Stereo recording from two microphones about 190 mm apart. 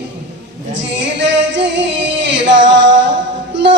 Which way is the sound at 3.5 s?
70° right (ahead or behind).